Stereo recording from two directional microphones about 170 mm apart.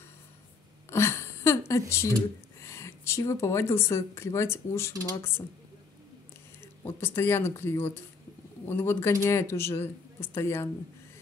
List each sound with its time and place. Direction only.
0.8 s a sound: 15° left (ahead or behind)
1.7 s speech: 15° left (ahead or behind)
6.6 s speech: 15° left (ahead or behind)